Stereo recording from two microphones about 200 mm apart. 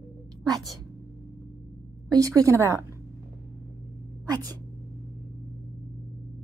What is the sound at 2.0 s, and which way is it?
Speech, 15° right (ahead or behind).